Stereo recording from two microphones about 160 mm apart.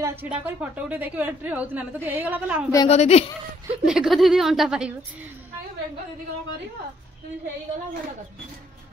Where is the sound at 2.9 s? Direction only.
40° left (ahead or behind).